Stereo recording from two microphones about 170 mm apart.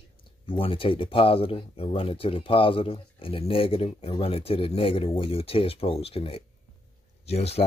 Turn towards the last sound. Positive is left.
turn(degrees=35)  # may be behind; listen again after turning